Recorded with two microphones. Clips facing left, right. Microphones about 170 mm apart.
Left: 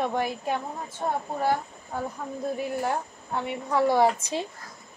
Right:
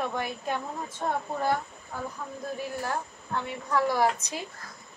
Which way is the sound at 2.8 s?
20° left (ahead or behind).